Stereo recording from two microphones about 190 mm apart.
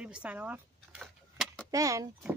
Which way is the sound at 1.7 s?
15° right (ahead or behind).